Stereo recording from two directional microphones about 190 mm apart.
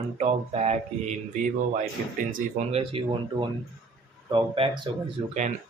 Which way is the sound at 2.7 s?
30° right (ahead or behind).